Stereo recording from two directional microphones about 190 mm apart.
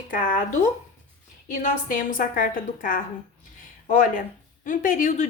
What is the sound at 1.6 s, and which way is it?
A woman's voice, 45° left (ahead or behind).